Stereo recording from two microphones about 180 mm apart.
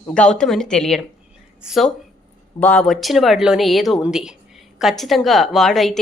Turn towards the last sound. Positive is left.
turn(degrees=0)  # may be behind; listen again after turning